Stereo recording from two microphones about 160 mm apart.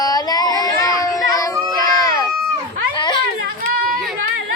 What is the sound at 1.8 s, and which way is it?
Baby cry, 25° left (ahead or behind).